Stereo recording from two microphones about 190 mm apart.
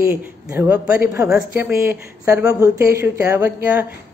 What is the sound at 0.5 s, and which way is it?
Speech, 10° right (ahead or behind).